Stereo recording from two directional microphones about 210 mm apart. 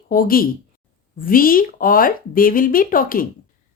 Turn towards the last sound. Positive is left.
turn(degrees=40)  # may be behind; listen again after turning